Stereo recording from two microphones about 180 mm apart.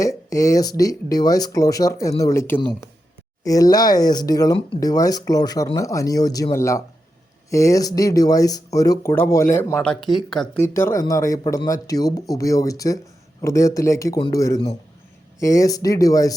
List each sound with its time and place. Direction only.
0.0 s speech: 20° left (ahead or behind)
9.9 s speech: centre (ahead or behind); by 16.3 s 20° left (ahead or behind)